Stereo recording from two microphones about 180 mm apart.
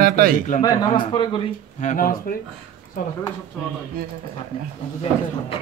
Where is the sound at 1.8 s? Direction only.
50° left (ahead or behind).